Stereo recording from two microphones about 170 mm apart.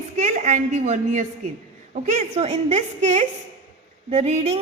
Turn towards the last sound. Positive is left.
turn(degrees=-40)  # may be behind; listen again after turning